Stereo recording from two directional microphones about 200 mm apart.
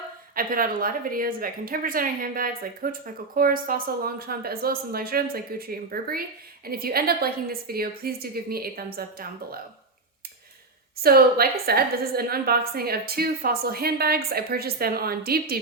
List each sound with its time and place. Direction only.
0.3 s a woman's voice: 45° right (ahead or behind)
11.0 s a woman's voice: 50° right (ahead or behind)